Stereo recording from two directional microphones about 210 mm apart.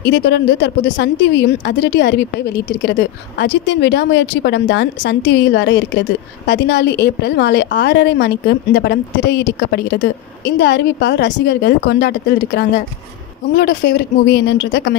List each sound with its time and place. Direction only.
0.0 s a woman's voice: 55° left (ahead or behind)